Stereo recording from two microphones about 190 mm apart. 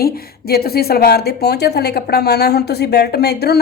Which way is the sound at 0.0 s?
55° left (ahead or behind).